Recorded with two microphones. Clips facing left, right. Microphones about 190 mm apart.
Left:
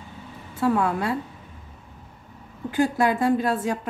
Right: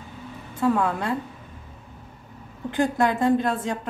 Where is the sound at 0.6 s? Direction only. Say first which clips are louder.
Even; 5° left (ahead or behind).